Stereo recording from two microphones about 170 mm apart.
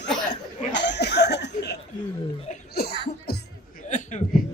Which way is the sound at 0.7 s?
90° left.